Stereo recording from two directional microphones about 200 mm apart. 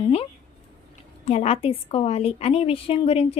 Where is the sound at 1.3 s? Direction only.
30° left (ahead or behind).